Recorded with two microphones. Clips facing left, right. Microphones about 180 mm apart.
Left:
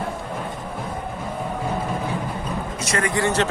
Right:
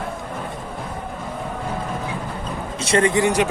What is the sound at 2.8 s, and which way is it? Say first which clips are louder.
Speech: right 6 dB; 30° right (ahead or behind).